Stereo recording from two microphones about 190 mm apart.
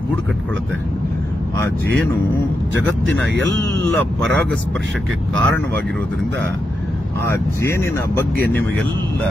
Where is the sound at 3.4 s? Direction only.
75° right (ahead or behind).